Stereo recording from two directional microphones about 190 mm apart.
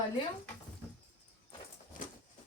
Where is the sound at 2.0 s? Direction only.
45° left (ahead or behind).